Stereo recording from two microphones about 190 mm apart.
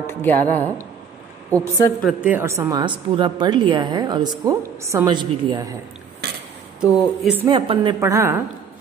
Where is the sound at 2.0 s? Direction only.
5° right (ahead or behind); by 5.7 s 25° right (ahead or behind).